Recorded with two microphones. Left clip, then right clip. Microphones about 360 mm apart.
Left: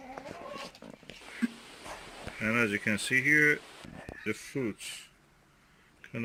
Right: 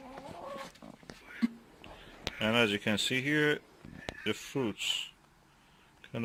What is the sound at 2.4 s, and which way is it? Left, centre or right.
Speech, centre.